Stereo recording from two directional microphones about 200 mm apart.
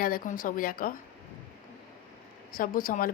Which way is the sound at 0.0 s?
45° left (ahead or behind).